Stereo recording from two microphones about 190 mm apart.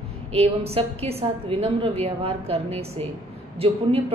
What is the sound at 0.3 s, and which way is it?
A woman's voice, 30° right (ahead or behind).